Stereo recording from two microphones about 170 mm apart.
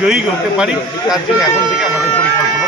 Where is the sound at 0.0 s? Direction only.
5° right (ahead or behind).